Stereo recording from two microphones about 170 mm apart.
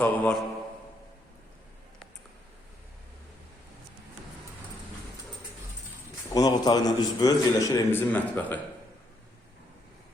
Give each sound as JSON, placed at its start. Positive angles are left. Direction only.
{"t": 0.0, "sound": "mantra", "side_deg": 5}
{"t": 6.3, "sound": "a man's voice", "side_deg": 25}